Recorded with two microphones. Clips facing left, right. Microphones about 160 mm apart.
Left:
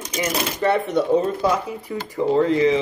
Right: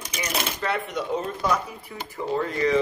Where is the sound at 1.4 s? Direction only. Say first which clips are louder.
Left 4 dB; 35° left (ahead or behind).